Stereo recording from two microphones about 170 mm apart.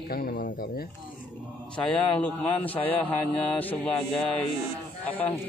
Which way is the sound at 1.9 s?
5° left (ahead or behind).